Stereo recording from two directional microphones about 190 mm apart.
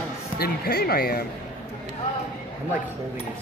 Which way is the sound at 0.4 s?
55° left (ahead or behind).